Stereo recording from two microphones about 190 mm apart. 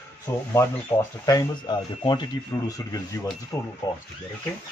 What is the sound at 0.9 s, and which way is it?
Speech, 10° left (ahead or behind).